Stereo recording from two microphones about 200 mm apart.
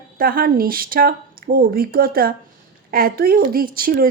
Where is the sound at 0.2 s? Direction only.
45° right (ahead or behind).